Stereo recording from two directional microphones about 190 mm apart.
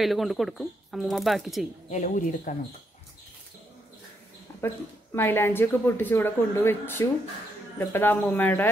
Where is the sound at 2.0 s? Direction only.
45° left (ahead or behind).